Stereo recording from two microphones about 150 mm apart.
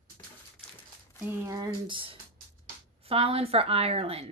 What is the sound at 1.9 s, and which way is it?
A woman's voice, 35° right (ahead or behind).